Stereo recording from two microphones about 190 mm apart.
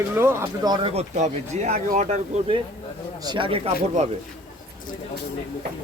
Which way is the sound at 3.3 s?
30° right (ahead or behind).